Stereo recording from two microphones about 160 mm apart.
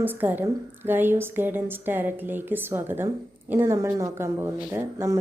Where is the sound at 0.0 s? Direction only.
10° right (ahead or behind).